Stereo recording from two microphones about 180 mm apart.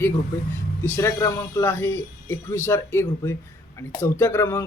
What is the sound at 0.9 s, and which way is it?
Speech, 15° left (ahead or behind).